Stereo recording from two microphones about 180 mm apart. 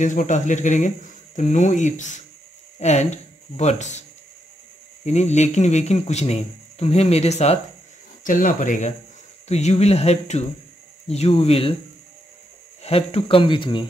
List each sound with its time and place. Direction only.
0.0 s speech: 45° left (ahead or behind)
5.0 s speech: 40° left (ahead or behind)
12.8 s speech: 35° left (ahead or behind)